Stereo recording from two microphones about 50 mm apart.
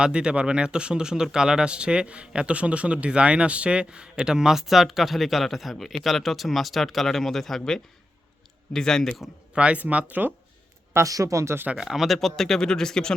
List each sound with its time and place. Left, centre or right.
0.0 s speech: centre
9.6 s speech: right
10.9 s speech: right
11.8 s speech: centre
12.0 s speech: centre